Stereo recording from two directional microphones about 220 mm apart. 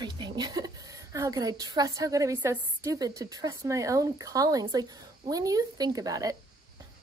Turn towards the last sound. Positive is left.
turn(degrees=-15)  # may be behind; listen again after turning